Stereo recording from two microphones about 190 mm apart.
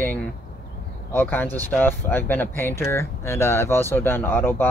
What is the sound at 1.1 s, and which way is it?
Speech, 10° left (ahead or behind).